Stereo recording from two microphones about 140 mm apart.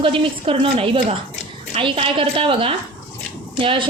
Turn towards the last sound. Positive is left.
turn(degrees=-40)  # may be behind; listen again after turning